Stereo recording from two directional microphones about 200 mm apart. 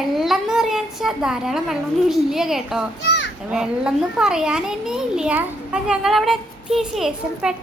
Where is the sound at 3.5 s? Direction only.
5° right (ahead or behind).